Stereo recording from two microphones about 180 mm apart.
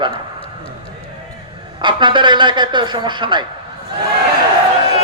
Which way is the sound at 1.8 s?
25° right (ahead or behind).